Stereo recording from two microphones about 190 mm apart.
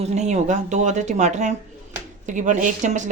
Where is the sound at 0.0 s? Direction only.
35° right (ahead or behind).